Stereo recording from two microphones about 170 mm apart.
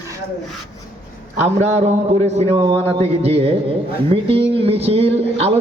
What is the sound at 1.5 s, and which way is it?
Speech, 40° right (ahead or behind).